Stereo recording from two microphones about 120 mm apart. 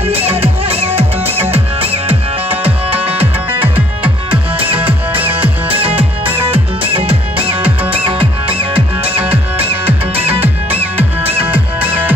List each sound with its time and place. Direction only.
0.0 s music: 55° right (ahead or behind)
3.6 s music: 15° right (ahead or behind)
4.5 s music: 50° right (ahead or behind)
5.1 s music: 15° right (ahead or behind)
5.4 s music: 50° right (ahead or behind)
10.4 s music: 15° right (ahead or behind)